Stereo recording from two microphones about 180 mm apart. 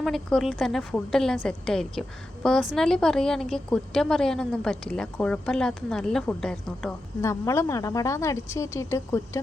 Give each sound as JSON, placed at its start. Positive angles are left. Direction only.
{"t": 0.0, "sound": "a woman's voice", "side_deg": 0}
{"t": 7.2, "sound": "speech", "side_deg": 15}